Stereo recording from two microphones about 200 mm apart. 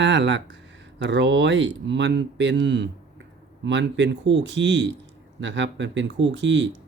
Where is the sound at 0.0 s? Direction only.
65° right (ahead or behind).